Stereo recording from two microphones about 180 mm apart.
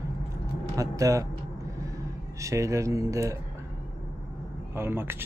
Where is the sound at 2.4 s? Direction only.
15° right (ahead or behind).